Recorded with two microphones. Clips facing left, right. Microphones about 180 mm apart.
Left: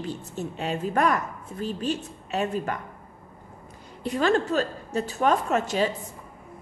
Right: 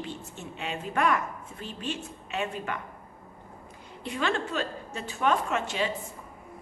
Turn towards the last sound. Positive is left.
turn(degrees=40)  # may be behind; listen again after turning